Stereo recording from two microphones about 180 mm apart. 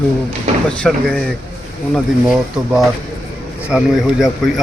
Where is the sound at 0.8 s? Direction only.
5° left (ahead or behind).